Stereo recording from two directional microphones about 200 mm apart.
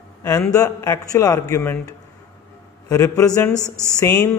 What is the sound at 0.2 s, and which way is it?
A man's voice, 15° left (ahead or behind).